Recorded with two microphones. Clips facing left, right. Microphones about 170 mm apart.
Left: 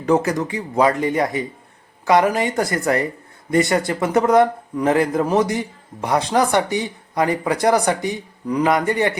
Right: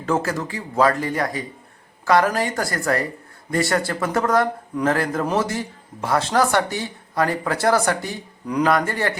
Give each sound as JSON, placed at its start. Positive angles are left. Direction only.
{"t": 0.0, "sound": "a man's voice", "side_deg": 15}
{"t": 8.7, "sound": "a man's voice", "side_deg": 20}